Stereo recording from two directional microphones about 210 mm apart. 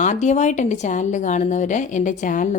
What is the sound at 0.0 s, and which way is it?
Speech, 35° left (ahead or behind).